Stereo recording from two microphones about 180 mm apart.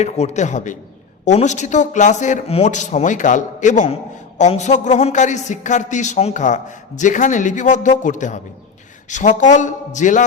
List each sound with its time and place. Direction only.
0.0 s a man's voice: 40° left (ahead or behind)